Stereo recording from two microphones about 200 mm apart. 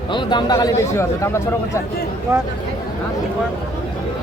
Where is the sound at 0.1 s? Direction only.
25° left (ahead or behind).